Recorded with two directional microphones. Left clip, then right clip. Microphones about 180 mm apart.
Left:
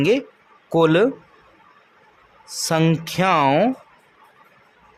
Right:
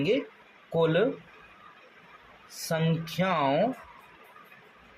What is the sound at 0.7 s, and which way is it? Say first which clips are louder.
Speech: left 9 dB; 55° left (ahead or behind).